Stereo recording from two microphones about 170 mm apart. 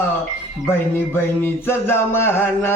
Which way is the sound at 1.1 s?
15° left (ahead or behind).